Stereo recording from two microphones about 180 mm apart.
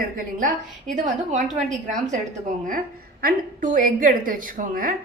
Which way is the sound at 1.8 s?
45° right (ahead or behind).